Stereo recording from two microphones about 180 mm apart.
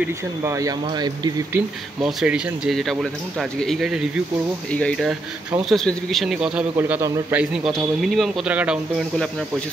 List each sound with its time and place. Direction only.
0.4 s speech: 15° right (ahead or behind)
2.0 s speech: 5° right (ahead or behind)